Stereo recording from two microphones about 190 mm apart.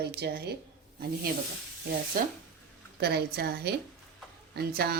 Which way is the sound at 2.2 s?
50° right (ahead or behind).